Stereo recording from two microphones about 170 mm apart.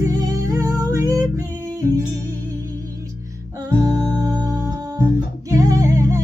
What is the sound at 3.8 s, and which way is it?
Music, 20° right (ahead or behind).